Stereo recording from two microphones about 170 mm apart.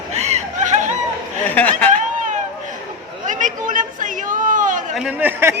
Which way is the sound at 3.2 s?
50° right (ahead or behind).